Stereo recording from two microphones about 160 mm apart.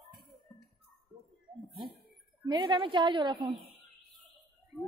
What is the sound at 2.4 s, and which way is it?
A woman's voice, 30° right (ahead or behind).